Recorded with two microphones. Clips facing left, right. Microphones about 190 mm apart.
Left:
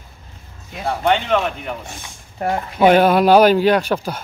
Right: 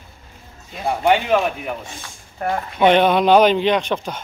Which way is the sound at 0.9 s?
10° right (ahead or behind).